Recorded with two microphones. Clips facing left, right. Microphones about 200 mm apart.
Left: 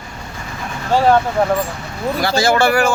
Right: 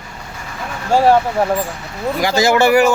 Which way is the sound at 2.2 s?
15° right (ahead or behind).